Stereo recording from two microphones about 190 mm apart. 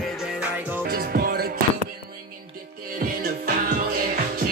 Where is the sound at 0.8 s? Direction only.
50° right (ahead or behind).